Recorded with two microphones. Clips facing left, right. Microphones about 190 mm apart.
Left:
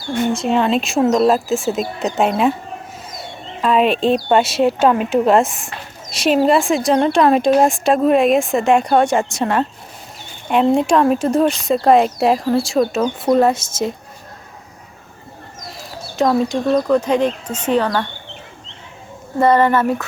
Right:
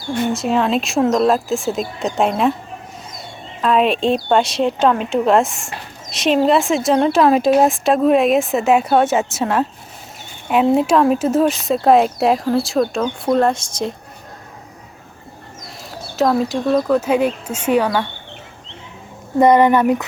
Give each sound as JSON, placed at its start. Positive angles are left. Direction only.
{"t": 0.3, "sound": "a woman's voice", "side_deg": 0}
{"t": 3.6, "sound": "a woman's voice", "side_deg": 0}
{"t": 15.8, "sound": "speech", "side_deg": 0}
{"t": 19.4, "sound": "speech", "side_deg": -15}